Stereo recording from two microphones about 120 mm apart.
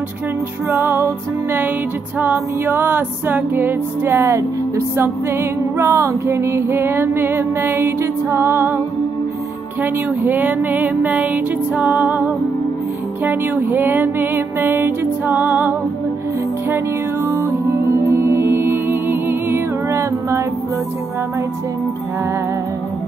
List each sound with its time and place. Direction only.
0.7 s music: 20° right (ahead or behind)
2.1 s music: 15° right (ahead or behind)